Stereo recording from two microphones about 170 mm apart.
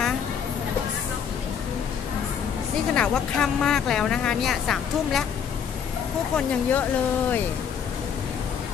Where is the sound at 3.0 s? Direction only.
5° left (ahead or behind).